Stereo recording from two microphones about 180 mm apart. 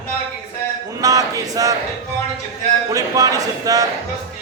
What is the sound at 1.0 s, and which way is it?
Speech, 20° right (ahead or behind).